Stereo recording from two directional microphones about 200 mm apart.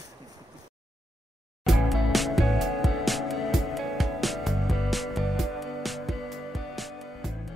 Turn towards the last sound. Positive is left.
turn(degrees=0)  # may be behind; listen again after turning